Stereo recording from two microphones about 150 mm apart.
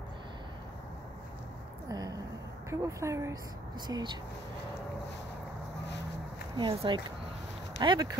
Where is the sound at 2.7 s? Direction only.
20° right (ahead or behind).